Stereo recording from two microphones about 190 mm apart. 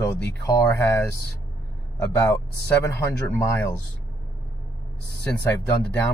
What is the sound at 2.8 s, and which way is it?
Speech, 15° left (ahead or behind).